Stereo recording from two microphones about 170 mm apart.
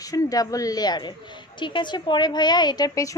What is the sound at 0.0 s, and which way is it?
A woman's voice, 20° left (ahead or behind).